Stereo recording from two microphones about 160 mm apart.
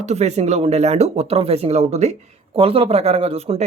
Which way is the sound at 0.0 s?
45° right (ahead or behind).